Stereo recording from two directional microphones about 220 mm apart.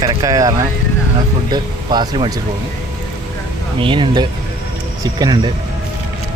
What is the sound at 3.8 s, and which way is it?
Speech, 25° right (ahead or behind).